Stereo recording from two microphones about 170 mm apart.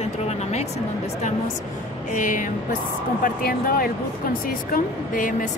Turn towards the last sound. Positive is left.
turn(degrees=50)  # may be behind; listen again after turning